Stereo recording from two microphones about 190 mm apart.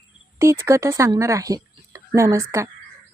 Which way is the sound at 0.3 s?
15° right (ahead or behind).